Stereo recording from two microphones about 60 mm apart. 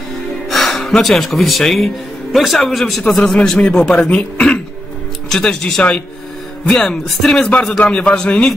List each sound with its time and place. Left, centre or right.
0.5 s a man's voice: centre